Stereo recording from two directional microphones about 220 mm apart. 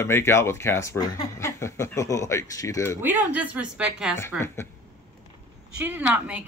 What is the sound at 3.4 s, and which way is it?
Speech, 5° right (ahead or behind).